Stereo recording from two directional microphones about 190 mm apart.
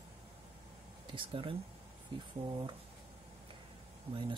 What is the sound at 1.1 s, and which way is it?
Speech, 25° right (ahead or behind).